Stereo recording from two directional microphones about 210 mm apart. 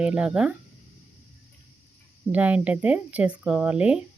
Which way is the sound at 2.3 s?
5° right (ahead or behind).